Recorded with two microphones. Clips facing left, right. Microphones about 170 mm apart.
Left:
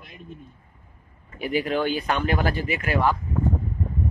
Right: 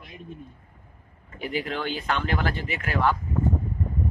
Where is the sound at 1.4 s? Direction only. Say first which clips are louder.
Left 5 dB; 15° left (ahead or behind).